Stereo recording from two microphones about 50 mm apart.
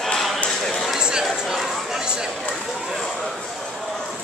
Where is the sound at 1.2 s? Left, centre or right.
Centre.